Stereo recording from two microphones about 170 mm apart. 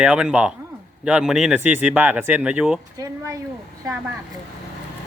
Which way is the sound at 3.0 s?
20° right (ahead or behind).